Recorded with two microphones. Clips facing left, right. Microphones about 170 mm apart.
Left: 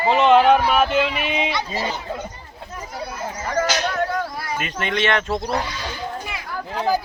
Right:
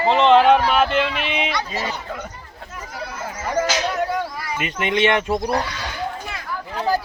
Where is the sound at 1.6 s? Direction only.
25° left (ahead or behind).